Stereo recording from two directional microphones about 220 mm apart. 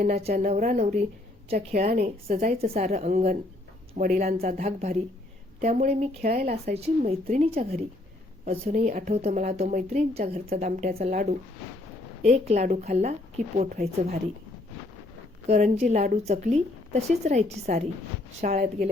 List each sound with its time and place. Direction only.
0.2 s a woman's voice: 30° right (ahead or behind)
1.9 s a woman's voice: 40° right (ahead or behind)
6.7 s a woman's voice: 30° right (ahead or behind)
15.4 s a woman's voice: 30° right (ahead or behind)